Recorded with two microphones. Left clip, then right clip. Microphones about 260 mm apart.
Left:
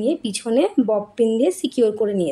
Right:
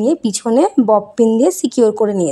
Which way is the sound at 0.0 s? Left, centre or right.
Right.